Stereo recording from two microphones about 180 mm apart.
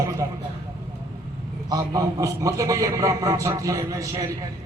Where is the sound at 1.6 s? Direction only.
20° right (ahead or behind).